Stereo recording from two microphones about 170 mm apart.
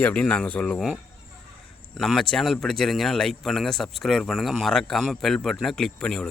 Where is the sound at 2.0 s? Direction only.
Centre (ahead or behind).